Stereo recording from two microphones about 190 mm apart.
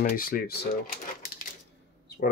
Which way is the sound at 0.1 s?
50° left (ahead or behind).